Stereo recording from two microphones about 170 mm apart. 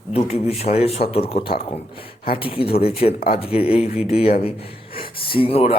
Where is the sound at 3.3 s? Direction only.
35° left (ahead or behind).